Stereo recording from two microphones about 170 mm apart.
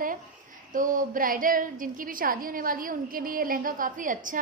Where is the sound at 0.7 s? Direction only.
50° right (ahead or behind).